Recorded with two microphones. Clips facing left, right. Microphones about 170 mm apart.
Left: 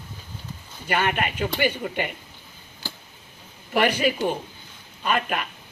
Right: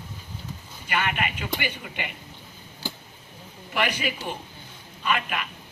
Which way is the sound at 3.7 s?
40° left (ahead or behind).